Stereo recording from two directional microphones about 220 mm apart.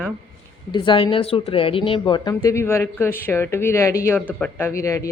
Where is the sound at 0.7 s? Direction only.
20° left (ahead or behind).